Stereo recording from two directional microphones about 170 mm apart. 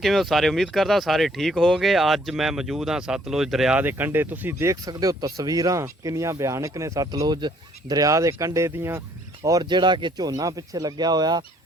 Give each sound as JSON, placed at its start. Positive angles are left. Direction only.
{"t": 0.0, "sound": "speech", "side_deg": 0}